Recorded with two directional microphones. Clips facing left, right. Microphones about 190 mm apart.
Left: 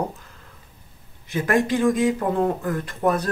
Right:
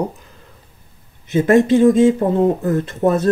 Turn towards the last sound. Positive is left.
turn(degrees=-25)  # may be behind; listen again after turning